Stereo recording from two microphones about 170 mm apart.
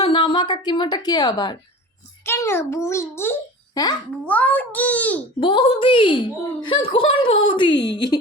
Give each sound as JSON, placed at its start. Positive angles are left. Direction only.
{"t": 0.0, "sound": "a woman's voice", "side_deg": 30}
{"t": 5.4, "sound": "a woman's voice", "side_deg": 30}